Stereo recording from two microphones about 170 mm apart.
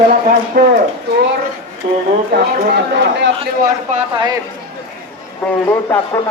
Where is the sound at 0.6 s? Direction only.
65° right (ahead or behind).